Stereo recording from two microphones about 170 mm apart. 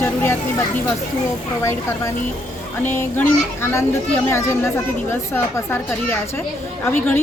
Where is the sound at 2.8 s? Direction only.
15° left (ahead or behind).